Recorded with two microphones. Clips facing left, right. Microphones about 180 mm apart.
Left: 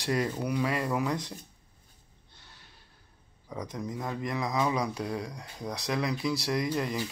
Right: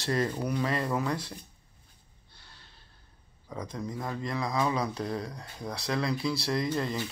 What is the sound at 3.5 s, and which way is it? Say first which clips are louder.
Speech: even; 20° left (ahead or behind).